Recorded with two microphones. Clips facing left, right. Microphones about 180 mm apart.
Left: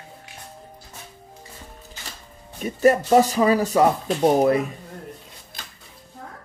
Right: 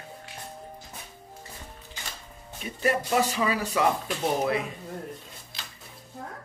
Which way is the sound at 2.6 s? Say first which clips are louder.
Left 9 dB; 40° left (ahead or behind).